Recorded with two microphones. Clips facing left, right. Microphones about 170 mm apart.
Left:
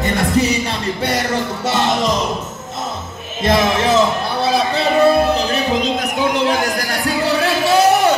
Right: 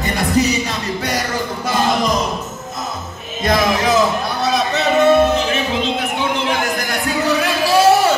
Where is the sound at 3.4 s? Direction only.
25° left (ahead or behind).